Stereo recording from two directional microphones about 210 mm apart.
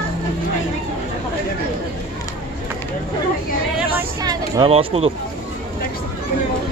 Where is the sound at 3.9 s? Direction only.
15° right (ahead or behind).